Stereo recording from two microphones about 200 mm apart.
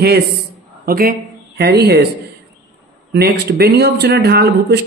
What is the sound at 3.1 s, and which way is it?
Speech, 50° right (ahead or behind).